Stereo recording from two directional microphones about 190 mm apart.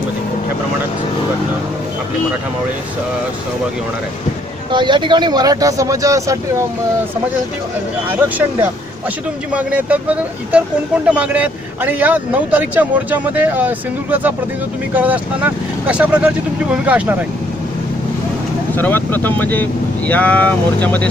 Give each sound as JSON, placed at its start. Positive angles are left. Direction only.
{"t": 4.7, "sound": "speech", "side_deg": -25}
{"t": 8.1, "sound": "speech", "side_deg": -10}
{"t": 18.8, "sound": "speech", "side_deg": 10}